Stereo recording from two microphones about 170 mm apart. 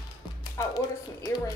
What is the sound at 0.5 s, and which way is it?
Music, 20° left (ahead or behind).